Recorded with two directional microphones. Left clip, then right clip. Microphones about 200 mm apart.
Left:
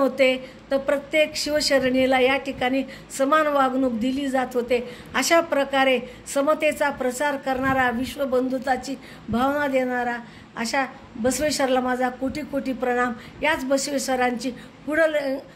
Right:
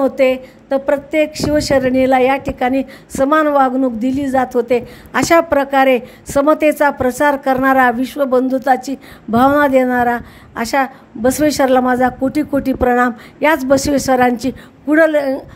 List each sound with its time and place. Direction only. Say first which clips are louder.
0.0 s a woman's voice: right 6 dB; 45° right (ahead or behind)